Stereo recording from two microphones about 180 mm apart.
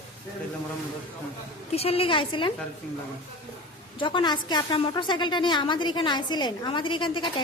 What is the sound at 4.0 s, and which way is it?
A woman's voice, 25° left (ahead or behind).